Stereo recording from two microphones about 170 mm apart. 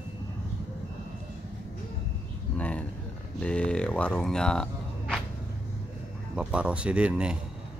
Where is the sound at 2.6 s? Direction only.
5° left (ahead or behind).